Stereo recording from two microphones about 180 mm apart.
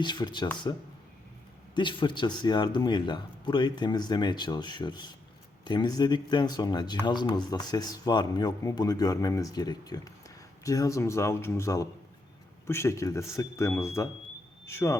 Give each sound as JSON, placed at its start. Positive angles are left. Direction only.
{"t": 0.0, "sound": "speech", "side_deg": 25}